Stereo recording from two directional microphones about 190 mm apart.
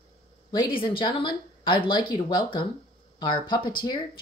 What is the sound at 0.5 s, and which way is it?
Speech, 25° left (ahead or behind).